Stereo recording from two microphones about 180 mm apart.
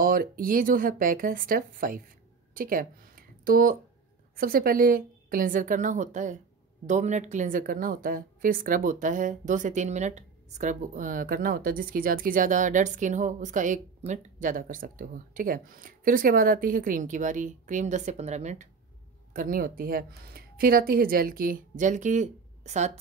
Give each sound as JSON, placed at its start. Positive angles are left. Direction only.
{"t": 0.0, "sound": "a woman's voice", "side_deg": -50}
{"t": 19.3, "sound": "a woman's voice", "side_deg": -50}